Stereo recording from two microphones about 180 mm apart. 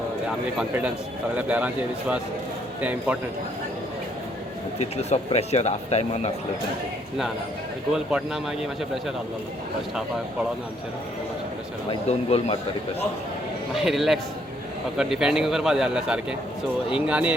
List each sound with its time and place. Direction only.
1.4 s speech: 10° right (ahead or behind)
4.8 s speech: 35° left (ahead or behind)
7.9 s speech: centre (ahead or behind)
11.9 s speech: 30° left (ahead or behind)
13.7 s speech: centre (ahead or behind)